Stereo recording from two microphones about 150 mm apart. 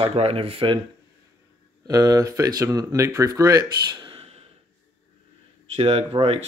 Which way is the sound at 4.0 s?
35° right (ahead or behind).